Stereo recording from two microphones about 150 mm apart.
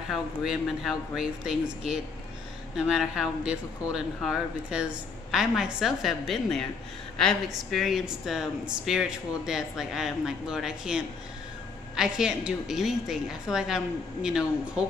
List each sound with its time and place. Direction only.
0.1 s speech: centre (ahead or behind)